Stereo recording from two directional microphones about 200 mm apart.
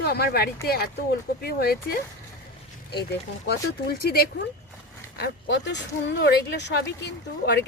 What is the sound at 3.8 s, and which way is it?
Speech, 50° left (ahead or behind).